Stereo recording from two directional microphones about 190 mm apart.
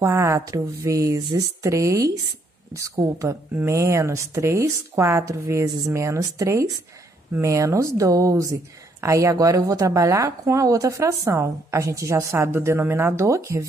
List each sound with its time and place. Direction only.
0.0 s speech: 15° right (ahead or behind)